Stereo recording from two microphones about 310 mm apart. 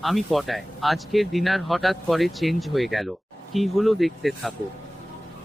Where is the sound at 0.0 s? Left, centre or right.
Centre.